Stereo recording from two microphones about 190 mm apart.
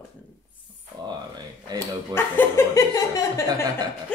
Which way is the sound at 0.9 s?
20° right (ahead or behind).